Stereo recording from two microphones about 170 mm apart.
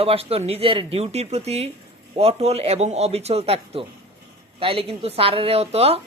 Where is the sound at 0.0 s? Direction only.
35° right (ahead or behind).